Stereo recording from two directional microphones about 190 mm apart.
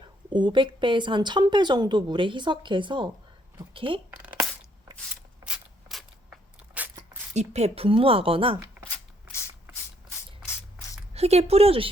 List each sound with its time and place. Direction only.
0.3 s a woman's voice: 25° right (ahead or behind)
5.5 s a sound: centre (ahead or behind)
6.7 s walk: 10° right (ahead or behind)
7.3 s a woman's voice: 35° right (ahead or behind)
11.1 s a woman's voice: 35° right (ahead or behind)